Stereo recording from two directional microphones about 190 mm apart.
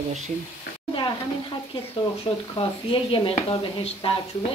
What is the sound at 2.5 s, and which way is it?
Speech, 25° left (ahead or behind).